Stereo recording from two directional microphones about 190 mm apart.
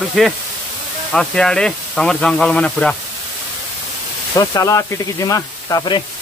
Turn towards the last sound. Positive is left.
turn(degrees=20)  # may be behind; listen again after turning